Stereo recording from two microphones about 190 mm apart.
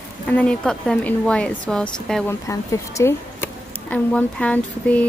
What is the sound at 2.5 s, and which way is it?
Speech, 15° left (ahead or behind).